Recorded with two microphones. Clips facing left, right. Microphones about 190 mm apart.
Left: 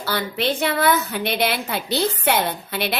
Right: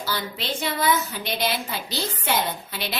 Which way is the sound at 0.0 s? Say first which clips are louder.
Left 6 dB; 60° left (ahead or behind).